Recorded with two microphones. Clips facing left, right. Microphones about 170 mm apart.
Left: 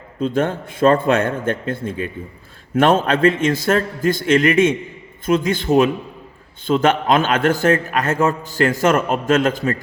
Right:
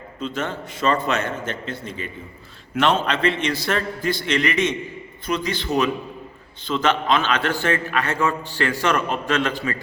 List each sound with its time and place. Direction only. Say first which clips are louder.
0.2 s a man's voice: left 8 dB; 50° left (ahead or behind)